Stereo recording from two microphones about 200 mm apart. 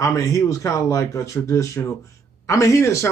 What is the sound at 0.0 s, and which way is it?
Speech, 15° left (ahead or behind).